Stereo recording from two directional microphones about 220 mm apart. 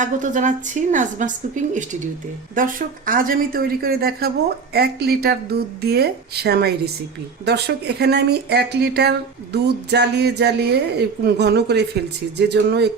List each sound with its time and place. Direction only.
0.0 s a woman's voice: 35° right (ahead or behind)